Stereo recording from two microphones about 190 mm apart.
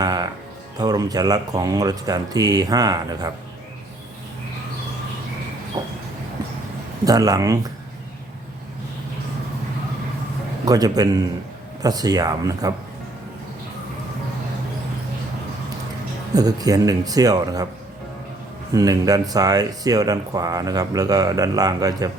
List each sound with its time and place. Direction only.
0.0 s music: 20° right (ahead or behind)
0.8 s speech: 20° right (ahead or behind)
5.8 s train: 20° right (ahead or behind)
7.0 s speech: 20° right (ahead or behind)
10.7 s speech: 20° right (ahead or behind)
16.3 s speech: 20° right (ahead or behind)
18.7 s speech: 20° right (ahead or behind)